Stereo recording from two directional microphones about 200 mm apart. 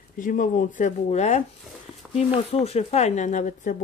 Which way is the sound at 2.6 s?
30° left (ahead or behind).